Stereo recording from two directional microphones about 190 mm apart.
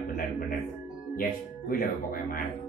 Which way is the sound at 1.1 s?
50° left (ahead or behind).